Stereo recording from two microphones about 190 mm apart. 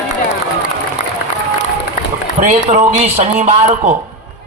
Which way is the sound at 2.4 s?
40° right (ahead or behind).